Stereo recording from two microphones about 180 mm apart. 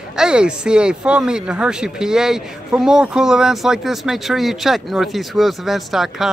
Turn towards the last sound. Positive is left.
turn(degrees=0)  # may be behind; listen again after turning